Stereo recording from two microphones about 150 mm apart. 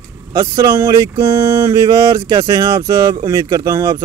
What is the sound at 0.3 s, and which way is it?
Speech, 20° right (ahead or behind).